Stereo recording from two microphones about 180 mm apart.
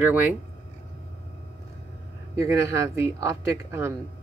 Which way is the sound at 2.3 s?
15° right (ahead or behind).